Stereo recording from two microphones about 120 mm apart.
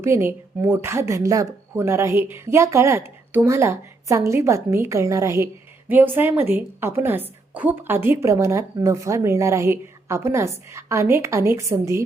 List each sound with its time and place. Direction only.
0.0 s a woman's voice: 20° right (ahead or behind)